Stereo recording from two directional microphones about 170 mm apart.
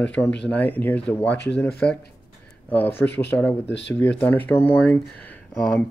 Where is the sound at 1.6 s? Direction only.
5° left (ahead or behind).